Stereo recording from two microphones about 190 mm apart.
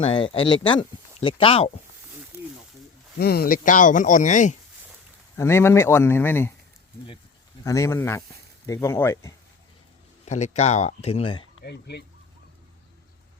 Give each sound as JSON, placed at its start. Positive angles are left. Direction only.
{"t": 0.0, "sound": "speech", "side_deg": 30}
{"t": 2.3, "sound": "wild animals", "side_deg": -15}
{"t": 3.2, "sound": "speech", "side_deg": 55}
{"t": 5.4, "sound": "speech", "side_deg": 15}
{"t": 7.6, "sound": "speech", "side_deg": 15}
{"t": 10.2, "sound": "speech", "side_deg": 35}
{"t": 11.6, "sound": "speech", "side_deg": 60}